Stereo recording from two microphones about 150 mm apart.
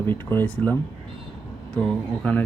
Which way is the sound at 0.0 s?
15° left (ahead or behind).